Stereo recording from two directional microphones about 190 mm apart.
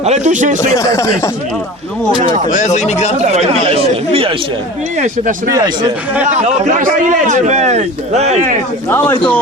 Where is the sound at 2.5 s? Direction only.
40° left (ahead or behind).